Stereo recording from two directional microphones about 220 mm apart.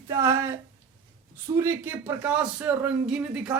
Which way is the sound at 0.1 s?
10° right (ahead or behind).